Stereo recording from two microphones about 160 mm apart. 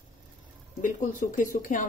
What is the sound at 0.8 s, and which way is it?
Speech, 55° left (ahead or behind).